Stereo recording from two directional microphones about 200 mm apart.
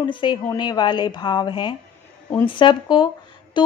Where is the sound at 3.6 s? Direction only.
25° left (ahead or behind).